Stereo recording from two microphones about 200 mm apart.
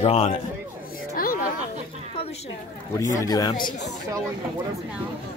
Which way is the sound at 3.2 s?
20° left (ahead or behind).